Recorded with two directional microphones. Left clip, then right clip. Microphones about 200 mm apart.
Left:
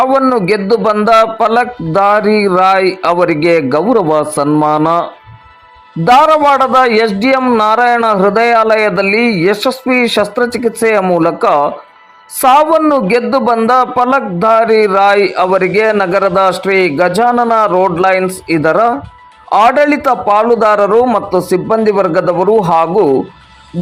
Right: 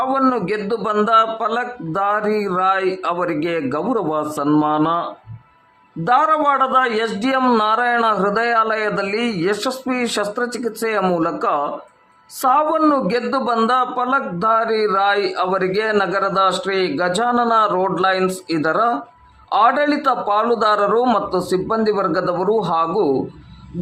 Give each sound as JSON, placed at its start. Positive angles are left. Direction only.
{"t": 0.0, "sound": "a man's voice", "side_deg": 20}
{"t": 6.1, "sound": "a man's voice", "side_deg": 25}